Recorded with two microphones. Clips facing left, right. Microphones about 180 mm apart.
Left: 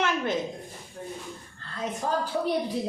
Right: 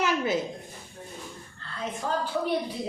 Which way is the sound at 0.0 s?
5° right (ahead or behind).